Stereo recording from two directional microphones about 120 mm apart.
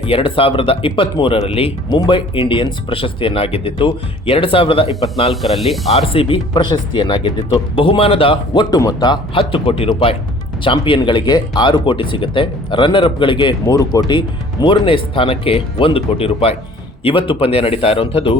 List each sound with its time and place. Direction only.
0.0 s speech: 50° left (ahead or behind)
5.3 s speech: centre (ahead or behind)
5.9 s speech: 55° left (ahead or behind)
8.7 s speech: 35° left (ahead or behind); by 18.3 s 50° left (ahead or behind)